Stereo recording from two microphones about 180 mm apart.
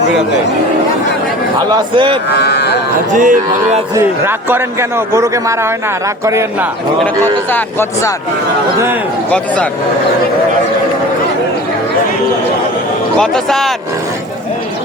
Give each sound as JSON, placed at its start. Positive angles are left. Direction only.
{"t": 1.7, "sound": "speech", "side_deg": -25}
{"t": 2.3, "sound": "cattle", "side_deg": 65}
{"t": 3.1, "sound": "speech", "side_deg": -45}
{"t": 3.9, "sound": "a man's voice", "side_deg": -15}
{"t": 7.5, "sound": "speech", "side_deg": 15}
{"t": 13.1, "sound": "speech", "side_deg": 5}